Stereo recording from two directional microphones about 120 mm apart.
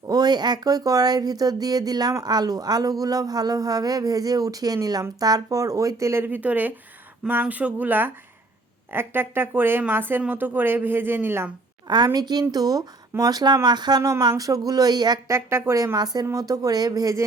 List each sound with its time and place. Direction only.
0.1 s a woman's voice: 35° right (ahead or behind); by 11.5 s 15° right (ahead or behind)
11.9 s speech: 35° right (ahead or behind)
15.3 s speech: 20° right (ahead or behind)